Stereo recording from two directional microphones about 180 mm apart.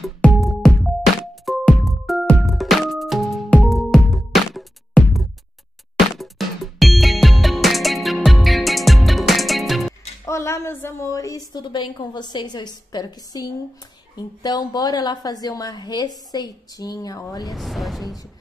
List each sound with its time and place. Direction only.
0.0 s music: centre (ahead or behind)
10.2 s a woman's voice: 15° left (ahead or behind)
17.5 s speech: centre (ahead or behind)